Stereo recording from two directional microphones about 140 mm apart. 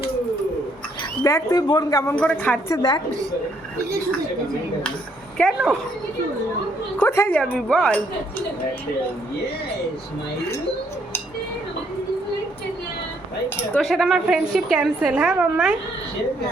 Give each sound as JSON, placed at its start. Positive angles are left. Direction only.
{"t": 1.2, "sound": "speech", "side_deg": 25}
{"t": 2.1, "sound": "speech", "side_deg": 10}
{"t": 2.7, "sound": "a woman's voice", "side_deg": 30}
{"t": 5.4, "sound": "a woman's voice", "side_deg": 0}
{"t": 7.0, "sound": "speech", "side_deg": 15}
{"t": 13.7, "sound": "a woman's voice", "side_deg": 0}